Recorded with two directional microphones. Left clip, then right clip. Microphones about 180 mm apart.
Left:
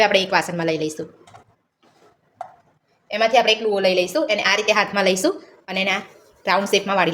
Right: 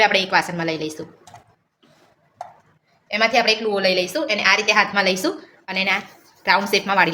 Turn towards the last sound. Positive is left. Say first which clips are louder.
# right 1 dB
turn(degrees=20)  # may be behind; listen again after turning